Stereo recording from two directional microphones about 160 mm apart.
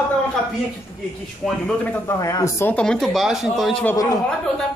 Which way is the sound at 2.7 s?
5° left (ahead or behind).